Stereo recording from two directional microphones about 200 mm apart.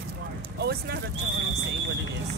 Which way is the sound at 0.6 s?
55° right (ahead or behind).